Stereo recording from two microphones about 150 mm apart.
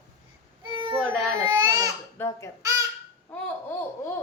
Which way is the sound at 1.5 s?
25° right (ahead or behind).